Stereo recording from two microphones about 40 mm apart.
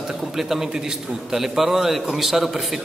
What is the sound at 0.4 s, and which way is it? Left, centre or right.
A man's voice, centre.